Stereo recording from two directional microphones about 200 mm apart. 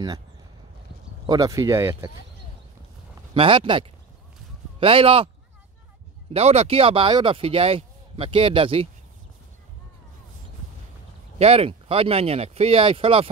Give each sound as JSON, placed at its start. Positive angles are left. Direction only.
{"t": 1.2, "sound": "speech", "side_deg": -20}
{"t": 3.3, "sound": "speech", "side_deg": -25}
{"t": 6.3, "sound": "speech", "side_deg": -30}
{"t": 11.3, "sound": "speech", "side_deg": -30}